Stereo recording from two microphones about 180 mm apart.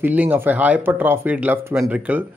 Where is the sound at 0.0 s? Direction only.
10° right (ahead or behind).